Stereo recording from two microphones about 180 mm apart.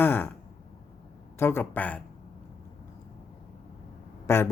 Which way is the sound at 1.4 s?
10° left (ahead or behind).